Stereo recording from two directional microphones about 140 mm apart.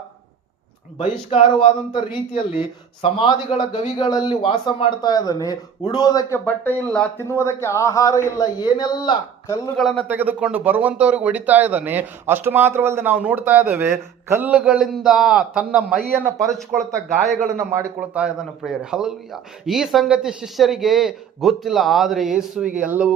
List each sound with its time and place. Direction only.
1.3 s a man's voice: 40° left (ahead or behind); by 7.1 s 10° left (ahead or behind)
7.2 s speech: 20° left (ahead or behind)
9.7 s a man's voice: 5° left (ahead or behind)
10.1 s speech: 10° right (ahead or behind)
14.5 s a man's voice: 5° right (ahead or behind)
17.6 s a man's voice: 20° right (ahead or behind)
18.1 s a man's voice: 5° right (ahead or behind)